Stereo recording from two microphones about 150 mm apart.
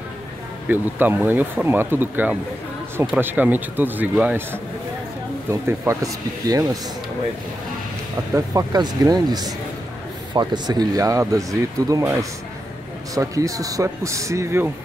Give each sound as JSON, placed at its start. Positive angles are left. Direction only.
{"t": 0.7, "sound": "a man's voice", "side_deg": -10}
{"t": 8.4, "sound": "a man's voice", "side_deg": -25}